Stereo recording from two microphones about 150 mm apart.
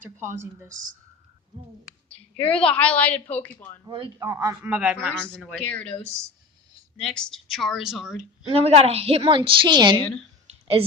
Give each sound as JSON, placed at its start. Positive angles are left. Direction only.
{"t": 2.1, "sound": "a woman's voice", "side_deg": 10}
{"t": 3.8, "sound": "a woman's voice", "side_deg": -35}
{"t": 4.2, "sound": "a man's voice", "side_deg": -20}
{"t": 4.6, "sound": "a man's voice", "side_deg": -10}
{"t": 5.1, "sound": "a woman's voice", "side_deg": 5}
{"t": 7.0, "sound": "a woman's voice", "side_deg": 5}
{"t": 8.5, "sound": "a woman's voice", "side_deg": -40}